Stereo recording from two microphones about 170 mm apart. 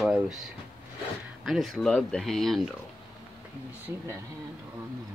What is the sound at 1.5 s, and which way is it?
Speech, centre (ahead or behind).